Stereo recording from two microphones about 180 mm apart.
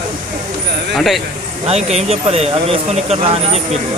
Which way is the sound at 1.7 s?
35° right (ahead or behind).